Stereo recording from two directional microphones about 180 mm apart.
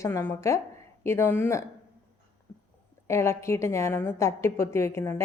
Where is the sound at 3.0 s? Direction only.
15° left (ahead or behind).